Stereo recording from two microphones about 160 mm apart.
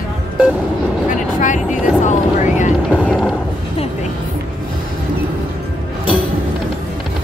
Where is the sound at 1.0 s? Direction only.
50° left (ahead or behind).